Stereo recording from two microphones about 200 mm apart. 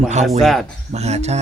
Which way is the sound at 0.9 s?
35° right (ahead or behind).